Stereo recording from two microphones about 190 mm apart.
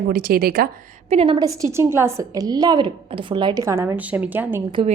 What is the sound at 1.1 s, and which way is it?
Speech, 25° right (ahead or behind).